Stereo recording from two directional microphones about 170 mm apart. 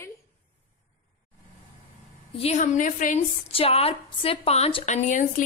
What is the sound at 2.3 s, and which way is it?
Speech, 40° left (ahead or behind).